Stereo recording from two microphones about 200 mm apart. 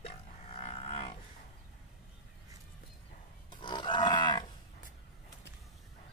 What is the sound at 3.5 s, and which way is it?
Wild animals, 25° left (ahead or behind).